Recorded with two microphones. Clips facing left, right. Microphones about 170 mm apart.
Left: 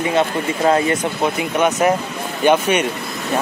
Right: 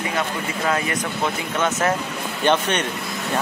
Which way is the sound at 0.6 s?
30° left (ahead or behind).